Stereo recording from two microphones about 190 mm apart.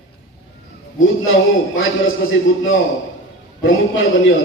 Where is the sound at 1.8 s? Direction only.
90° left.